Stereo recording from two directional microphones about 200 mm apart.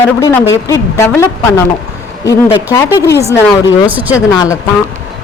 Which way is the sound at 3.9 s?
10° right (ahead or behind).